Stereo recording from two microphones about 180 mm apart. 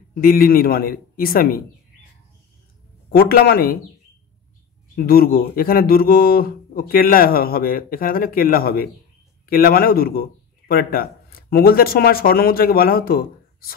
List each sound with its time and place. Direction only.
0.1 s speech: 55° left (ahead or behind)
3.1 s speech: 55° left (ahead or behind)
4.9 s speech: 55° left (ahead or behind)